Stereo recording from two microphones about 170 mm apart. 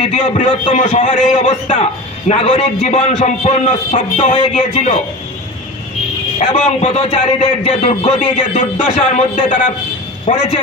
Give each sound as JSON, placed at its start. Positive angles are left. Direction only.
{"t": 0.0, "sound": "a man's voice", "side_deg": 35}
{"t": 6.5, "sound": "a man's voice", "side_deg": 35}
{"t": 10.2, "sound": "a man's voice", "side_deg": 35}